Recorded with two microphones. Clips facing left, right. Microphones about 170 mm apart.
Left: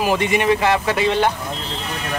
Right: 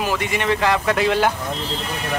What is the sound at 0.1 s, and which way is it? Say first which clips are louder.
Speech: left 4 dB; 20° left (ahead or behind).